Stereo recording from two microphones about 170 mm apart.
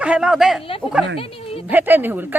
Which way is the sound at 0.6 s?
35° left (ahead or behind).